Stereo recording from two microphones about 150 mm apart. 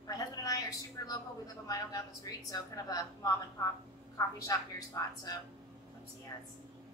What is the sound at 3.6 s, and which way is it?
A woman's voice, 25° left (ahead or behind).